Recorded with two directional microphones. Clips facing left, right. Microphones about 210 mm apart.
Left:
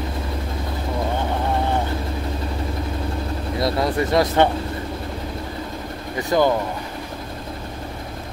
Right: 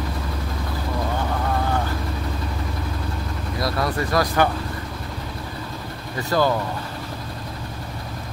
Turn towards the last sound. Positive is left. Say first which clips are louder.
# left 2 dB
turn(degrees=20)  # may be behind; listen again after turning